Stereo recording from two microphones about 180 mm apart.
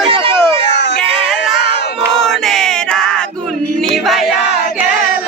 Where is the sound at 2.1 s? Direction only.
Centre (ahead or behind).